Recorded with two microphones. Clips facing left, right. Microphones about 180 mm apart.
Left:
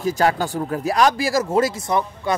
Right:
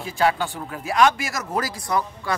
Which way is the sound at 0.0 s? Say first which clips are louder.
Left 3 dB; 40° left (ahead or behind).